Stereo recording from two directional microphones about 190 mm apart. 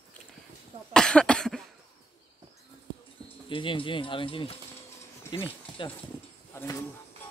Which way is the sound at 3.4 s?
25° left (ahead or behind).